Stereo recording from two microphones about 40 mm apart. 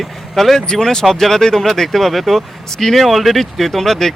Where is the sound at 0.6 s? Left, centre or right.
Centre.